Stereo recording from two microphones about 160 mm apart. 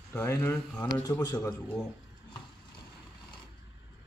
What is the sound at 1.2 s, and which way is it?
Speech, 25° left (ahead or behind).